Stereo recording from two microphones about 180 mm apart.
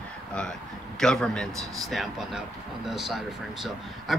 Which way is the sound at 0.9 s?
5° left (ahead or behind).